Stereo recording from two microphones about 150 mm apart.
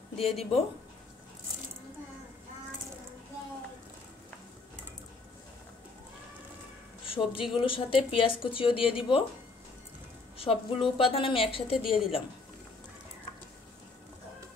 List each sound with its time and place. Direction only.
0.1 s speech: 40° left (ahead or behind)
7.1 s a woman's voice: 35° left (ahead or behind)
10.3 s a woman's voice: 40° left (ahead or behind)